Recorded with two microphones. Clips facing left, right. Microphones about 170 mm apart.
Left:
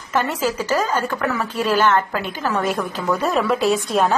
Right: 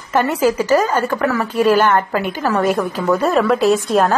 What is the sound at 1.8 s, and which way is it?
Speech, 55° right (ahead or behind).